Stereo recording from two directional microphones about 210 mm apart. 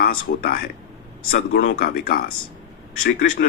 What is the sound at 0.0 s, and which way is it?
Speech, 45° left (ahead or behind).